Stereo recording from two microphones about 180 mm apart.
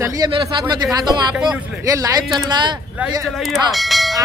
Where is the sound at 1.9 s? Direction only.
20° right (ahead or behind).